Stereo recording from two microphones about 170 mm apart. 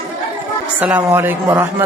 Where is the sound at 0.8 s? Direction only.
10° right (ahead or behind).